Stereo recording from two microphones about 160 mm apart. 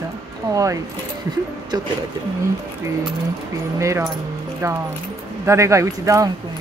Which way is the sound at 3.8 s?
20° right (ahead or behind).